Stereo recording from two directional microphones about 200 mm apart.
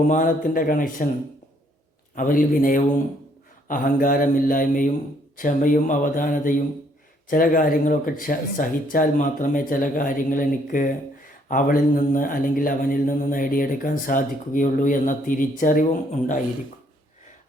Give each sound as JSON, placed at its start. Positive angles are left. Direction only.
{"t": 0.1, "sound": "mantra", "side_deg": 40}
{"t": 2.1, "sound": "mantra", "side_deg": 40}